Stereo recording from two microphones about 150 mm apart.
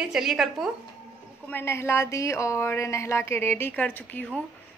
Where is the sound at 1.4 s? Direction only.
15° left (ahead or behind).